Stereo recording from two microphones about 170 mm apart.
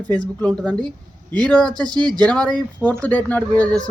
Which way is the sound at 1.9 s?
25° right (ahead or behind).